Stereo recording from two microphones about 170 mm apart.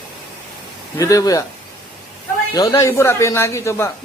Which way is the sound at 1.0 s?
20° left (ahead or behind).